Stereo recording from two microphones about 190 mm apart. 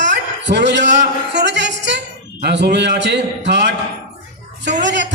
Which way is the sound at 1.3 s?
65° right (ahead or behind).